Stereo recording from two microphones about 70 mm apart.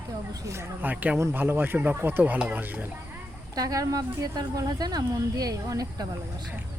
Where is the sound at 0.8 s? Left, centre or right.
Right.